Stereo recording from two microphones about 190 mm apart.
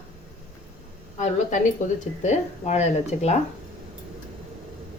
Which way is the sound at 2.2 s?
40° left (ahead or behind).